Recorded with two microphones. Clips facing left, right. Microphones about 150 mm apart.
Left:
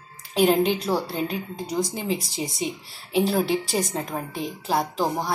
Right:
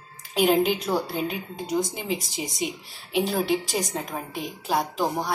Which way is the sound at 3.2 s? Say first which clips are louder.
Left 2 dB; 5° left (ahead or behind).